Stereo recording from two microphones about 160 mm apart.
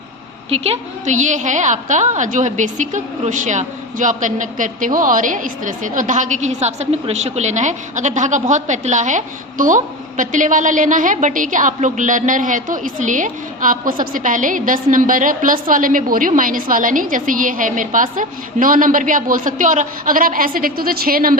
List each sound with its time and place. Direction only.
0.5 s a woman's voice: 40° right (ahead or behind); by 21.3 s 65° right (ahead or behind)